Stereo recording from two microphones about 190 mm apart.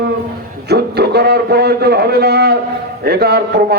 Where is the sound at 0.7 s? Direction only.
60° right (ahead or behind).